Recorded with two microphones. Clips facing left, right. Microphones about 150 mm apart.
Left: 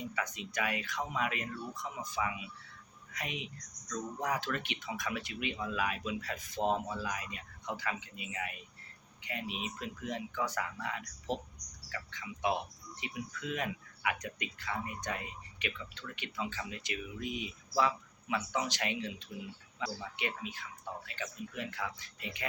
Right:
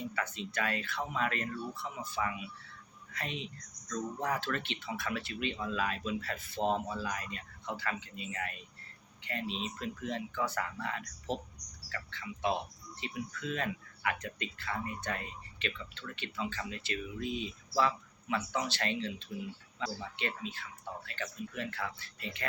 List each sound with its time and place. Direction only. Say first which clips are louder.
0.0 s speech: right 1 dB; 15° left (ahead or behind)